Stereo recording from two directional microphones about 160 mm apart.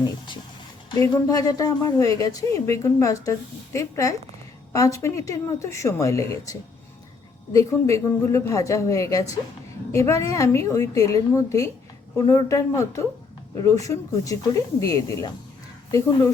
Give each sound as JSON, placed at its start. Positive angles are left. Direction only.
{"t": 0.9, "sound": "a woman's voice", "side_deg": 25}